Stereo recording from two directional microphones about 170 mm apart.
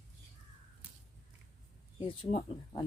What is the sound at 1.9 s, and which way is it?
Speech, 30° left (ahead or behind).